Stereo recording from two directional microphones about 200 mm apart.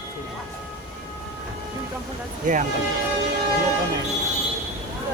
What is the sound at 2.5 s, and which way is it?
Speech, 40° right (ahead or behind).